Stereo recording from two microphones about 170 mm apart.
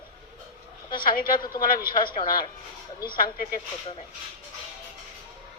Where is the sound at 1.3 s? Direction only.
25° left (ahead or behind).